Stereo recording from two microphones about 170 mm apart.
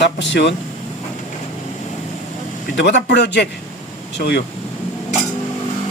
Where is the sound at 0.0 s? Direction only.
90° left.